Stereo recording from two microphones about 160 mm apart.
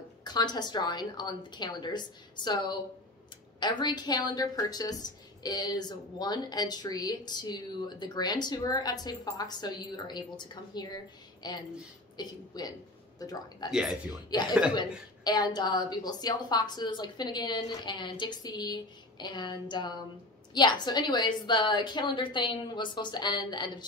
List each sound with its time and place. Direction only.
0.2 s a woman's voice: 25° left (ahead or behind)
13.7 s speech: centre (ahead or behind)
14.3 s a woman's voice: 25° left (ahead or behind)